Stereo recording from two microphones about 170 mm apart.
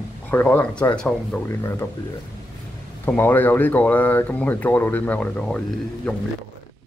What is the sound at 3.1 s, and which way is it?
Speech, 10° left (ahead or behind).